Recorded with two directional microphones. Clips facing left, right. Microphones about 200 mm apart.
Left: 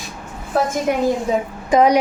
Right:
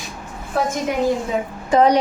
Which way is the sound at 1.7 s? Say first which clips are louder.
Left 1 dB; 10° left (ahead or behind).